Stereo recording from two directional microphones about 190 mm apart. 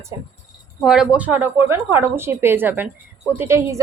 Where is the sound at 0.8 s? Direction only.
5° right (ahead or behind).